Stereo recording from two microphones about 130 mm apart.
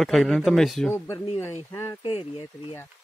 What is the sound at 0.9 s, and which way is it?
Speech, 20° left (ahead or behind).